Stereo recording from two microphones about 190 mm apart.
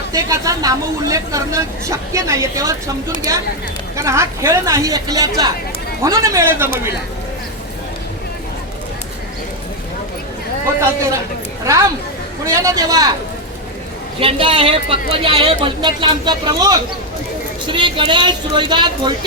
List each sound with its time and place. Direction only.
0.1 s speech: 20° right (ahead or behind)
3.9 s speech: 15° right (ahead or behind)
11.6 s speech: 15° right (ahead or behind)
14.2 s a woman's voice: 30° right (ahead or behind)